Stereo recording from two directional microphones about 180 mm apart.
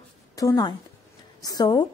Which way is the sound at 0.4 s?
20° left (ahead or behind).